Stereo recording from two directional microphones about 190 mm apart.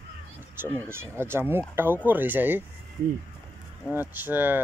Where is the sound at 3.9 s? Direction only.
10° right (ahead or behind).